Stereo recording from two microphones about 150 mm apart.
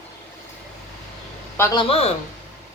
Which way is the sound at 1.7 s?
40° left (ahead or behind).